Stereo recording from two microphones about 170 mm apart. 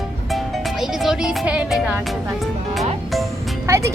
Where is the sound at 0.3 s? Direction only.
Centre (ahead or behind).